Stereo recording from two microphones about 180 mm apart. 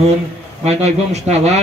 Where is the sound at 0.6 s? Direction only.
35° right (ahead or behind).